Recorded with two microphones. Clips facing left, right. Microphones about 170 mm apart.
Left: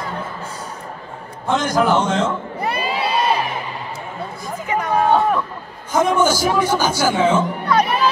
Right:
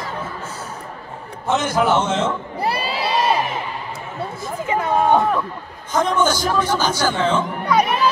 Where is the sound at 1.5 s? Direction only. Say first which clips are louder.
Left 1 dB; 5° right (ahead or behind).